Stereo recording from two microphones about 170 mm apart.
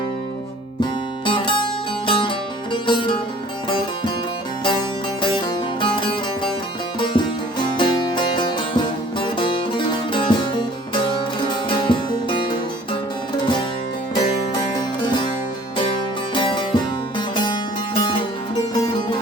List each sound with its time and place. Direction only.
0.8 s music: 30° left (ahead or behind)
5.8 s music: 30° left (ahead or behind)
16.3 s music: 30° left (ahead or behind)